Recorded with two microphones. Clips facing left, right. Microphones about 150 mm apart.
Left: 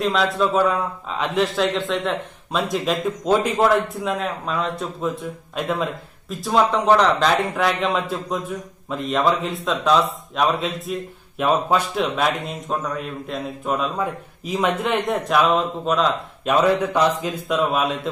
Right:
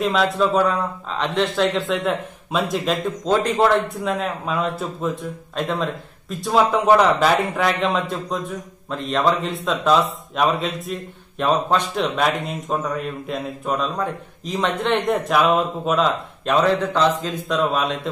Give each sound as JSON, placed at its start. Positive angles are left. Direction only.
{"t": 0.0, "sound": "a man's voice", "side_deg": 0}